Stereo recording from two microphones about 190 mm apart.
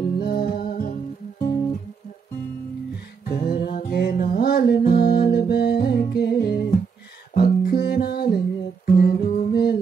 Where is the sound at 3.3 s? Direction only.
50° left (ahead or behind).